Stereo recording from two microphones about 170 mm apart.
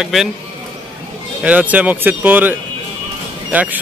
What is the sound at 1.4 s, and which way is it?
A man's voice, 10° right (ahead or behind).